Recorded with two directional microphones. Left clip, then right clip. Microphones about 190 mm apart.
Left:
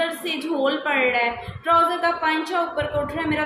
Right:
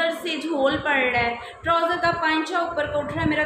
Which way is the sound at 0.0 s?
Centre (ahead or behind).